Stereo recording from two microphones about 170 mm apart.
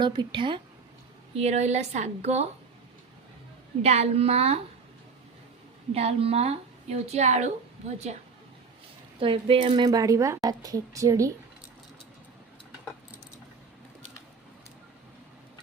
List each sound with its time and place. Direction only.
0.0 s speech: 30° right (ahead or behind)
1.4 s a woman's voice: 40° right (ahead or behind)
3.8 s a woman's voice: 40° right (ahead or behind)
5.9 s a woman's voice: 35° right (ahead or behind)
9.2 s speech: 30° right (ahead or behind)